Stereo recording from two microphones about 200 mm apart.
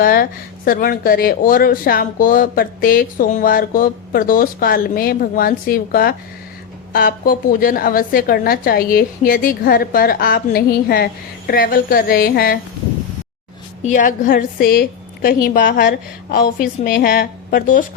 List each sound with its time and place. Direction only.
0.0 s speech: 45° left (ahead or behind)
13.8 s speech: 40° left (ahead or behind)